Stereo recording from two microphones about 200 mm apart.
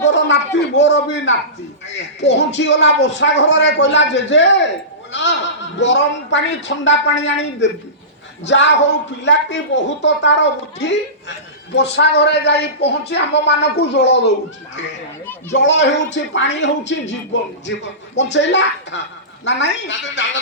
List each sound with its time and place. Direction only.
0.0 s a sound: 65° left (ahead or behind)
0.8 s speech: 60° left (ahead or behind)
15.5 s speech: 65° left (ahead or behind)